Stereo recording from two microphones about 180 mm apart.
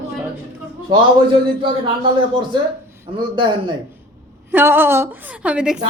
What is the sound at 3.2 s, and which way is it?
Speech, 25° right (ahead or behind).